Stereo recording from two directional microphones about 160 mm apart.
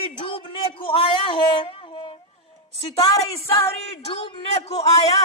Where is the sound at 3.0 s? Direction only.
25° left (ahead or behind).